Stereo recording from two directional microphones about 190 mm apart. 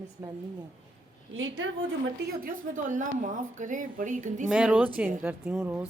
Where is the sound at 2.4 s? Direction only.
45° right (ahead or behind).